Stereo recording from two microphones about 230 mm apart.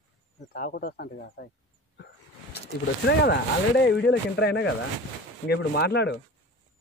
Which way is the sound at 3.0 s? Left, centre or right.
Left.